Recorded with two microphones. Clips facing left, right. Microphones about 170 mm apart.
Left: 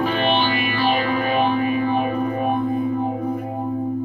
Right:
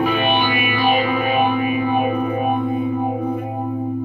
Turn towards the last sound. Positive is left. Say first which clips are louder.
# right 1 dB
turn(degrees=-10)  # may be behind; listen again after turning